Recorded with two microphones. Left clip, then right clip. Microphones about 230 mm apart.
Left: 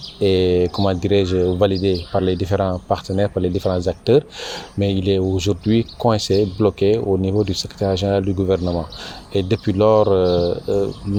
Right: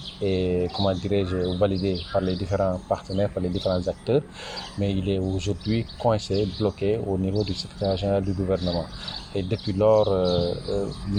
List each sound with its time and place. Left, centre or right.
0.2 s speech: left